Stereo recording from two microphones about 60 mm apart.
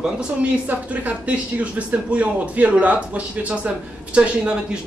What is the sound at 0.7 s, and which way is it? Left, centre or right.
Speech, right.